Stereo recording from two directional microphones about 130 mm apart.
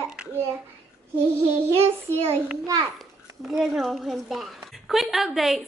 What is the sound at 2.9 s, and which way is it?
Speech, centre (ahead or behind).